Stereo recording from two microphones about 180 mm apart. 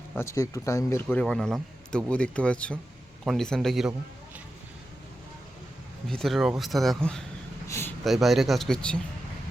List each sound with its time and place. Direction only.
0.2 s speech: 15° left (ahead or behind)
1.0 s speech: 5° left (ahead or behind)
6.1 s speech: centre (ahead or behind)
7.7 s a sound: 15° left (ahead or behind)
8.0 s speech: centre (ahead or behind)